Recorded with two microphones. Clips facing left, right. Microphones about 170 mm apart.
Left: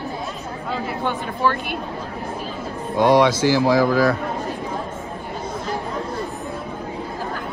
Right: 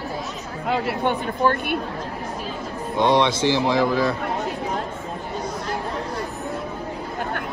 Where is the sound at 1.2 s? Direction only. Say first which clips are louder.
Left 1 dB; 45° right (ahead or behind).